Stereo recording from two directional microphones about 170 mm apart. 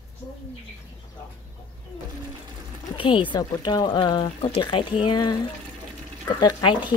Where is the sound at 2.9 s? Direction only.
30° left (ahead or behind).